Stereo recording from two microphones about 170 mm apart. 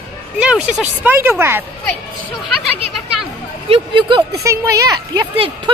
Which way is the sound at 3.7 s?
30° right (ahead or behind).